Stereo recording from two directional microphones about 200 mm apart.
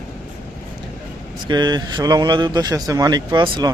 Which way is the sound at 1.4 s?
20° right (ahead or behind).